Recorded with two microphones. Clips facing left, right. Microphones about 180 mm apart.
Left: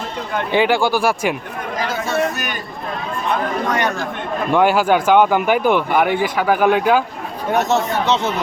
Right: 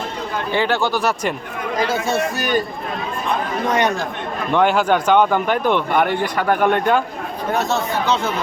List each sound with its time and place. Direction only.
0.5 s speech: 15° left (ahead or behind)
3.7 s speech: 20° right (ahead or behind)
4.5 s speech: 5° left (ahead or behind)
7.5 s speech: 20° left (ahead or behind)